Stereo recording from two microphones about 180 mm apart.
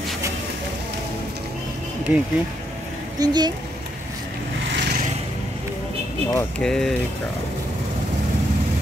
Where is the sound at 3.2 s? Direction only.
25° right (ahead or behind).